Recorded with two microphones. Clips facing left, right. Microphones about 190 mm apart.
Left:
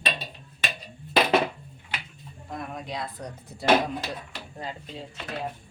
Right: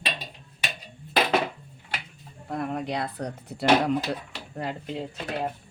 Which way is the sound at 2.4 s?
65° right (ahead or behind).